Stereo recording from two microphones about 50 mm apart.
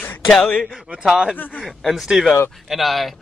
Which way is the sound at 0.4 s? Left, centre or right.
Centre.